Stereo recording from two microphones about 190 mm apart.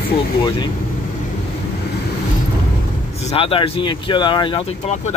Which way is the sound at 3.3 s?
30° left (ahead or behind).